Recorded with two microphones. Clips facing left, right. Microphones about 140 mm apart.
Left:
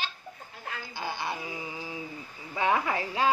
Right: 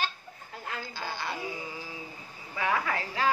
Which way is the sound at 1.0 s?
20° left (ahead or behind).